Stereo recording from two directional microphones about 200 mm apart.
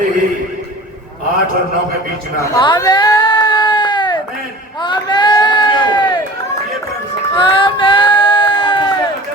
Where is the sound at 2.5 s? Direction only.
20° left (ahead or behind).